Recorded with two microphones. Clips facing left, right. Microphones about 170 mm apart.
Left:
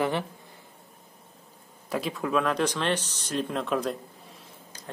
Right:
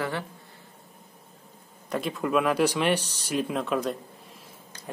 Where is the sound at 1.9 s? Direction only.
Centre (ahead or behind).